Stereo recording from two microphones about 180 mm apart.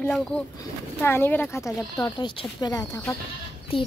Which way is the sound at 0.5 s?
15° left (ahead or behind).